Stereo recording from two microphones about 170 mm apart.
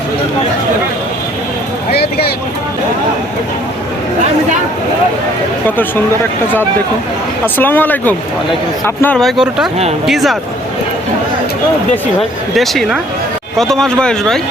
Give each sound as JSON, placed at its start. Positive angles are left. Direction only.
{"t": 1.9, "sound": "a sound", "side_deg": 65}
{"t": 7.4, "sound": "speech", "side_deg": 10}
{"t": 12.5, "sound": "speech", "side_deg": 0}